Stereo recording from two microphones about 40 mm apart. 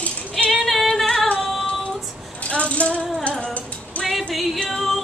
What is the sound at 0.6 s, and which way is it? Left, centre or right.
Female singing, centre.